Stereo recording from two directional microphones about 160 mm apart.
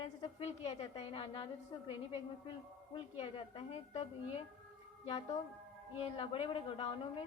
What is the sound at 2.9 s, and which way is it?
A woman's voice, 35° left (ahead or behind).